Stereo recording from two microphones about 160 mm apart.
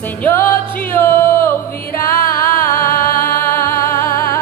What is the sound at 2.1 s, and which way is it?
Music, 65° left (ahead or behind).